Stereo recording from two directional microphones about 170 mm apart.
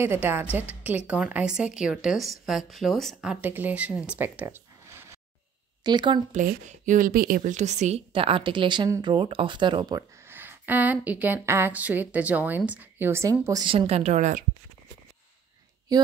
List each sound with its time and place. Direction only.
0.0 s a woman's voice: 15° right (ahead or behind)
5.9 s speech: 25° right (ahead or behind)
6.3 s speech: 45° right (ahead or behind); by 10.0 s 25° right (ahead or behind)
10.3 s a woman's voice: 10° right (ahead or behind)
13.7 s speech: 35° right (ahead or behind)